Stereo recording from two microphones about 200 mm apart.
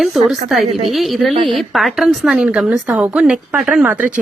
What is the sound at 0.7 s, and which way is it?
Speech, 30° right (ahead or behind).